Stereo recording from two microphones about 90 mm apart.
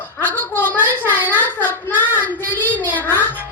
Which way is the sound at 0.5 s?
20° left (ahead or behind).